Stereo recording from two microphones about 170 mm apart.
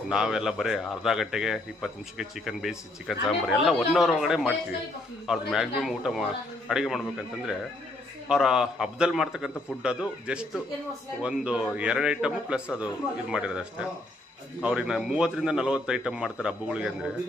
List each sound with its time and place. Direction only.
0.1 s speech: 5° right (ahead or behind)